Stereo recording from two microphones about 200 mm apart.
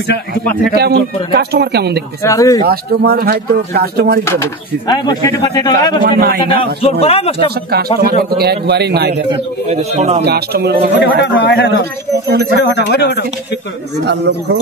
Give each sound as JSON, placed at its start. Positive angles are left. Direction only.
{"t": 0.7, "sound": "speech", "side_deg": -50}
{"t": 2.2, "sound": "speech", "side_deg": 15}
{"t": 2.6, "sound": "speech", "side_deg": -50}
{"t": 4.2, "sound": "speech", "side_deg": 15}
{"t": 6.0, "sound": "speech", "side_deg": -45}
{"t": 6.4, "sound": "speech", "side_deg": 25}
{"t": 8.3, "sound": "a man's voice", "side_deg": -55}
{"t": 9.3, "sound": "a man's voice", "side_deg": -30}
{"t": 10.2, "sound": "speech", "side_deg": -55}
{"t": 11.0, "sound": "speech", "side_deg": 60}
{"t": 11.8, "sound": "speech", "side_deg": -55}
{"t": 12.5, "sound": "speech", "side_deg": 55}
{"t": 13.9, "sound": "a man's voice", "side_deg": -55}